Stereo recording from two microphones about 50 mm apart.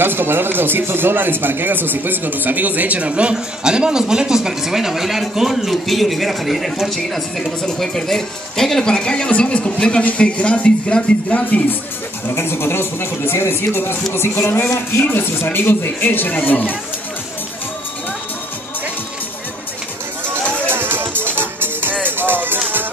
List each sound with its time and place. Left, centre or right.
0.0 s a woman's voice: right; by 11.6 s left
12.4 s speech: left
20.6 s music: right